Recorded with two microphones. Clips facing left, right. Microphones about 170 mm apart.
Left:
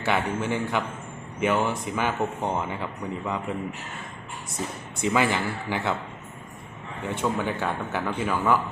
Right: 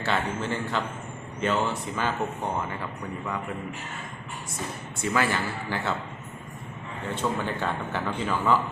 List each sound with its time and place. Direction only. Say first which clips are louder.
0.0 s speech: left 2 dB; 15° left (ahead or behind)
4.9 s speech: left 3 dB; 20° left (ahead or behind)
7.0 s speech: left 2 dB; 15° left (ahead or behind)